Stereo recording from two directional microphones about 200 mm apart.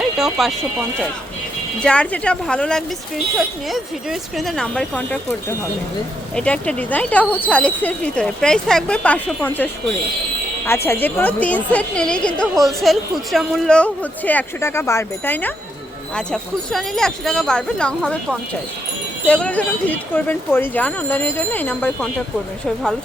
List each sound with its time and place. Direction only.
0.0 s a sound: centre (ahead or behind)
1.8 s a woman's voice: 5° left (ahead or behind)
10.8 s a woman's voice: 10° left (ahead or behind)